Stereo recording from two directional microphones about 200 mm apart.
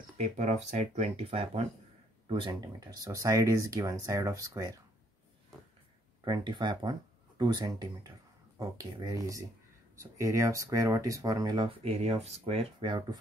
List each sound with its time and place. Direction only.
0.2 s speech: 35° right (ahead or behind); by 4.7 s 15° right (ahead or behind)
6.2 s speech: 20° right (ahead or behind)